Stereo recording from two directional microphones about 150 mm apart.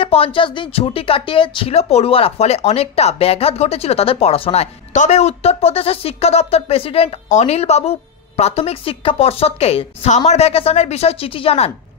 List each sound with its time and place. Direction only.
0.0 s speech: 40° left (ahead or behind)